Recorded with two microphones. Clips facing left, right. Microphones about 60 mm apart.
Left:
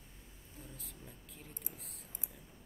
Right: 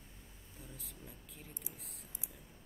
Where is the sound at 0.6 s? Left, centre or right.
Centre.